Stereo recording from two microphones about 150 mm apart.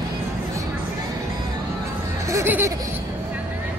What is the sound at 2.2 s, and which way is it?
Music, 15° right (ahead or behind).